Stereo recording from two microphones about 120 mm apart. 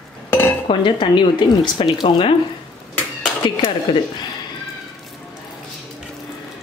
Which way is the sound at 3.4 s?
40° left (ahead or behind).